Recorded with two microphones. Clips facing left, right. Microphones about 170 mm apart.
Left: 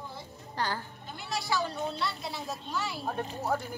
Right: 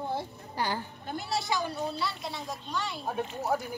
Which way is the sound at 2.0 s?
Centre (ahead or behind).